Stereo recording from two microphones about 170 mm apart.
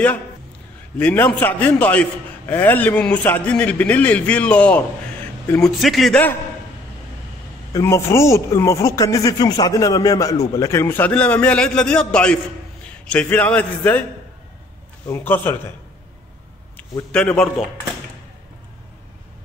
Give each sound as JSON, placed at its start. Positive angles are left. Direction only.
{"t": 0.9, "sound": "a man's voice", "side_deg": 10}
{"t": 7.7, "sound": "a man's voice", "side_deg": 15}
{"t": 15.0, "sound": "a man's voice", "side_deg": 15}
{"t": 16.7, "sound": "a man's voice", "side_deg": 5}